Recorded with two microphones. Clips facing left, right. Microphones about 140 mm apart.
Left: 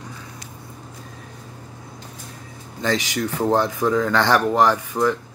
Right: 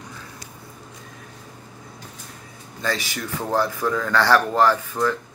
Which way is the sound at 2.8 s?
20° left (ahead or behind).